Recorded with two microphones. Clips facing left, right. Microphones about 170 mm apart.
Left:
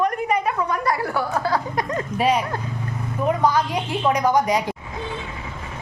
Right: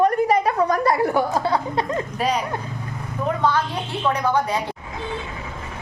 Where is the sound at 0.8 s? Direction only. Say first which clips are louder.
Right 4 dB; 25° right (ahead or behind).